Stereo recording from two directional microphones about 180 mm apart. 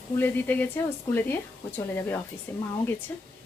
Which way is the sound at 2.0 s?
10° left (ahead or behind).